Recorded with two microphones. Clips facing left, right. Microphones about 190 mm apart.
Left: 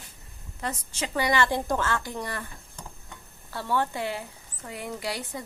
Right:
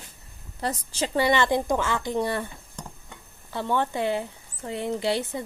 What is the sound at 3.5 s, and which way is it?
Speech, 20° right (ahead or behind).